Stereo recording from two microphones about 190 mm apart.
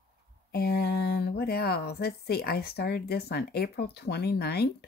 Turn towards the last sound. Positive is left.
turn(degrees=60)  # may be behind; listen again after turning